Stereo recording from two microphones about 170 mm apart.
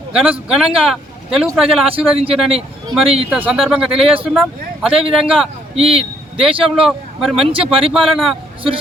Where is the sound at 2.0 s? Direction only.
35° right (ahead or behind).